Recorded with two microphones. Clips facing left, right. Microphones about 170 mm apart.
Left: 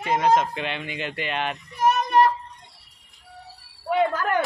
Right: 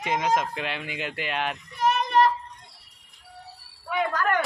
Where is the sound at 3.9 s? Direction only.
30° left (ahead or behind).